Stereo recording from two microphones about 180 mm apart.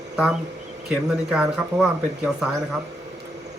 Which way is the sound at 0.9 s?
5° right (ahead or behind).